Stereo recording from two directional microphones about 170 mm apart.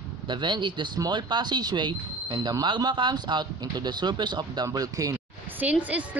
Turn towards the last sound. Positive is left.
turn(degrees=-10)  # may be behind; listen again after turning